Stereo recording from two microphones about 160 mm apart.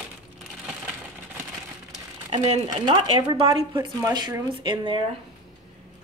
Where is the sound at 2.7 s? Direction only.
25° right (ahead or behind).